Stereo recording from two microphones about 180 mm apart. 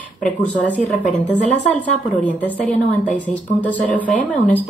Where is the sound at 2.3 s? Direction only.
10° left (ahead or behind).